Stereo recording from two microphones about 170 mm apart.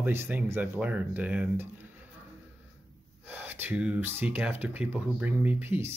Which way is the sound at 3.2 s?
10° right (ahead or behind).